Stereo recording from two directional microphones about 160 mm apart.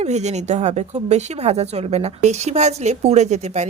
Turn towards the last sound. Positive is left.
turn(degrees=-45)  # may be behind; listen again after turning